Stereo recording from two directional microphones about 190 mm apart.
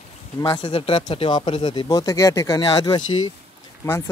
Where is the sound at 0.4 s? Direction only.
20° left (ahead or behind).